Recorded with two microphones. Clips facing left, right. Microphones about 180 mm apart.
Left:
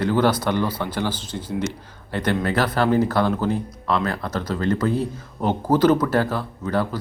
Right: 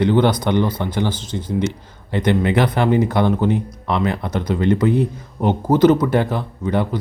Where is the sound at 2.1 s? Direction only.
15° right (ahead or behind).